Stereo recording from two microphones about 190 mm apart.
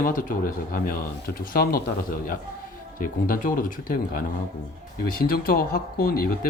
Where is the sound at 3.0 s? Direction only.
45° left (ahead or behind).